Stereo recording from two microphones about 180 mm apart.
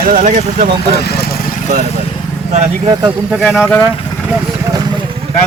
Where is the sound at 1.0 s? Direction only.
60° left (ahead or behind); by 1.8 s 45° left (ahead or behind).